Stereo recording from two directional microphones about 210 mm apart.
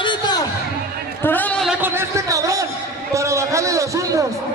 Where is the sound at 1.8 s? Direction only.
15° right (ahead or behind).